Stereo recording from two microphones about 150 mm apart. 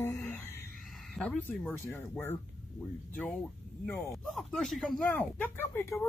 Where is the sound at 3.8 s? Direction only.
Centre (ahead or behind).